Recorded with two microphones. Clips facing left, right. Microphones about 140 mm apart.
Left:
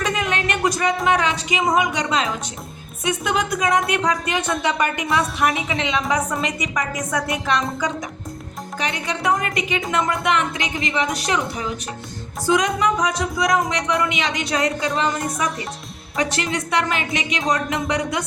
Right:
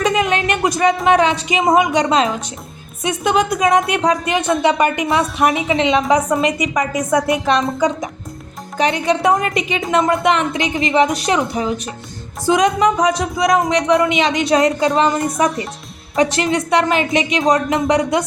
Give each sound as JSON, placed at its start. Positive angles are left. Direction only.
{"t": 0.0, "sound": "a sound", "side_deg": -20}
{"t": 1.0, "sound": "speech", "side_deg": -25}
{"t": 8.8, "sound": "speech", "side_deg": -25}
{"t": 16.1, "sound": "speech", "side_deg": -20}